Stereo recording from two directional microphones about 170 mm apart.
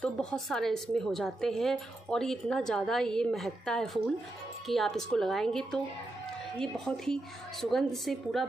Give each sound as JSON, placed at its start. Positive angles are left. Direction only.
{"t": 0.0, "sound": "a woman's voice", "side_deg": 5}